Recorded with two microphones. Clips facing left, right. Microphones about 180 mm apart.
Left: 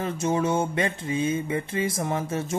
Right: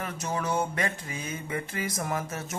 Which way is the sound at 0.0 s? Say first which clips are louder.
Left 7 dB; 25° left (ahead or behind).